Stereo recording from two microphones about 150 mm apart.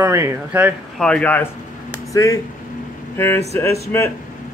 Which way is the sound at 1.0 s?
5° left (ahead or behind).